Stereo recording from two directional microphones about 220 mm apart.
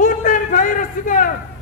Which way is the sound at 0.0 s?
35° left (ahead or behind).